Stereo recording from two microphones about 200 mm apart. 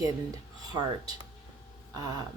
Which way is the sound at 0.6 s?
20° right (ahead or behind).